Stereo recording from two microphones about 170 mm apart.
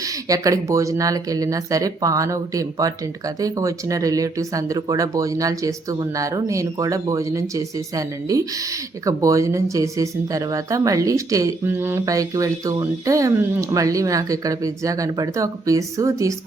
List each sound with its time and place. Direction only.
0.0 s speech: 20° right (ahead or behind)